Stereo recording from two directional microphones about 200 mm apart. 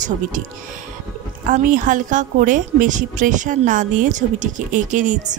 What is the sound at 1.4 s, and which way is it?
A woman's voice, 40° right (ahead or behind).